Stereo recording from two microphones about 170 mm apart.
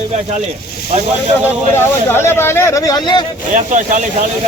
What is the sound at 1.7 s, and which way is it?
Speech, 15° left (ahead or behind).